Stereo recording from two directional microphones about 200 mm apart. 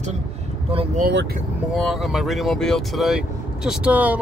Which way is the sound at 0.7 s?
40° right (ahead or behind).